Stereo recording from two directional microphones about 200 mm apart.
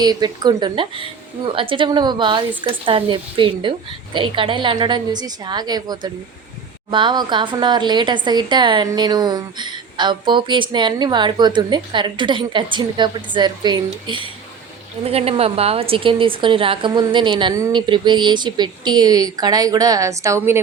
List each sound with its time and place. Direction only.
0.0 s speech: 20° right (ahead or behind)